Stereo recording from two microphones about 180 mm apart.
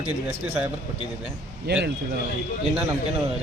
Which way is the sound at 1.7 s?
65° right (ahead or behind).